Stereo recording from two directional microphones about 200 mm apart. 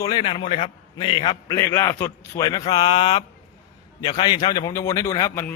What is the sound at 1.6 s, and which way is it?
A man's voice, 15° left (ahead or behind).